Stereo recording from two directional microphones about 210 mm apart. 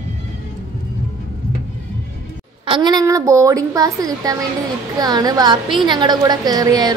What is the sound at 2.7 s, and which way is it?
A woman's voice, 20° right (ahead or behind).